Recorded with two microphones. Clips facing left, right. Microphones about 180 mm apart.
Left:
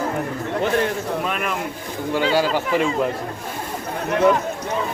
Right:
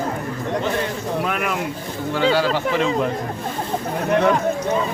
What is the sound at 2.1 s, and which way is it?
Speech, 10° left (ahead or behind).